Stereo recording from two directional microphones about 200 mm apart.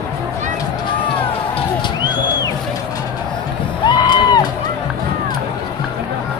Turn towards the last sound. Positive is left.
turn(degrees=20)  # may be behind; listen again after turning